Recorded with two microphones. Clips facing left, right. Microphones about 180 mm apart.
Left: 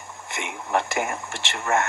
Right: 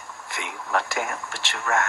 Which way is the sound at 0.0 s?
25° left (ahead or behind).